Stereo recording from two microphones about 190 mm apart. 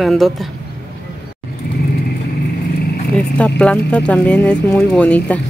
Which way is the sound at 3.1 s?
5° left (ahead or behind).